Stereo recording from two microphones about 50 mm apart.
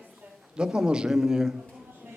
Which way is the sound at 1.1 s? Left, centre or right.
Centre.